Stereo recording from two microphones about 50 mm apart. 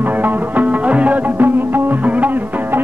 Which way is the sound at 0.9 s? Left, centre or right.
Right.